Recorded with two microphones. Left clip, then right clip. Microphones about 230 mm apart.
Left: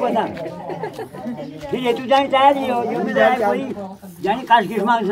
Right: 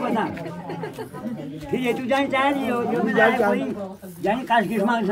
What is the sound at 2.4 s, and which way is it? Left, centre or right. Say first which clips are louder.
Speech: left 7 dB; centre.